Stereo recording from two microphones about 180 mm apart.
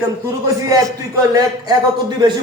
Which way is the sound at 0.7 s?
20° right (ahead or behind).